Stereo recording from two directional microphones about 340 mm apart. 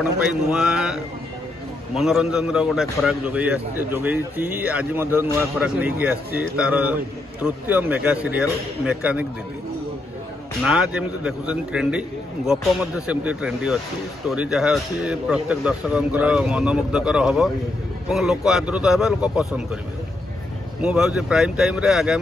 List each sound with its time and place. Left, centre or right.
0.2 s a man's voice: centre
2.0 s a man's voice: centre
10.6 s a man's voice: centre
20.8 s a man's voice: centre